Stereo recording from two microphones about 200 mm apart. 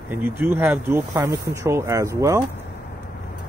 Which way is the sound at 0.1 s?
10° right (ahead or behind).